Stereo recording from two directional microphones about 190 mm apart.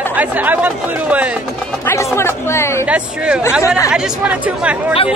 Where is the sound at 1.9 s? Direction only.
15° left (ahead or behind).